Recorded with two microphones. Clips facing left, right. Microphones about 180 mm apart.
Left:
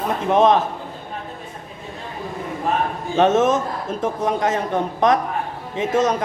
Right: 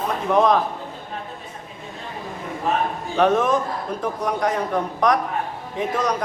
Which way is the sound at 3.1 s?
25° left (ahead or behind).